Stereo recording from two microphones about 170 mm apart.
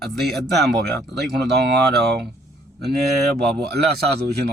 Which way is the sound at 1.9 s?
75° right (ahead or behind).